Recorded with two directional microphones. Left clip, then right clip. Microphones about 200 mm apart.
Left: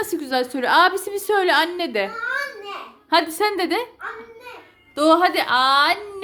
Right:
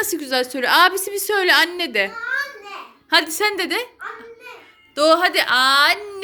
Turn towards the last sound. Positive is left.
turn(degrees=10)  # may be behind; listen again after turning